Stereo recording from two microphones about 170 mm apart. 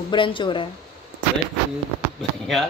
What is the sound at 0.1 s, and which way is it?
Speech, 30° left (ahead or behind).